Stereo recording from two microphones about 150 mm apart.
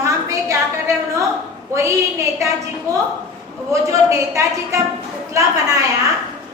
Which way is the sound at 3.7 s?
20° right (ahead or behind).